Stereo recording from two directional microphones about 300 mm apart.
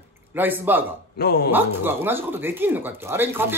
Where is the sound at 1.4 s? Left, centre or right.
Centre.